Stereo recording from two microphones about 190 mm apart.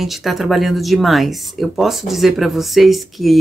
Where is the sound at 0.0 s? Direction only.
Centre (ahead or behind).